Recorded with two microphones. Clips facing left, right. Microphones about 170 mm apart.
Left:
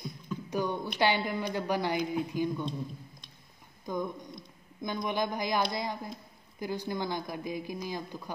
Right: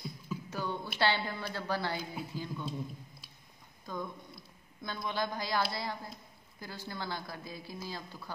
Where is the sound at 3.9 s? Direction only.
15° left (ahead or behind).